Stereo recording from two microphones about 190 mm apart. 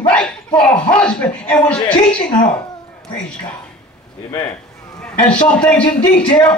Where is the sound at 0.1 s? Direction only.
5° left (ahead or behind).